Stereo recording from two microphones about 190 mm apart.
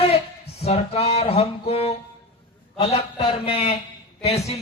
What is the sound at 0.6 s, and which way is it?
A man's voice, 35° left (ahead or behind).